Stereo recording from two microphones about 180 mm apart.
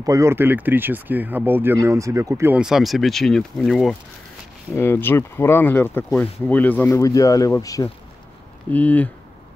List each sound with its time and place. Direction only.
0.0 s speech: 15° right (ahead or behind); by 3.9 s centre (ahead or behind)
4.7 s speech: 15° left (ahead or behind)
8.7 s speech: 10° left (ahead or behind)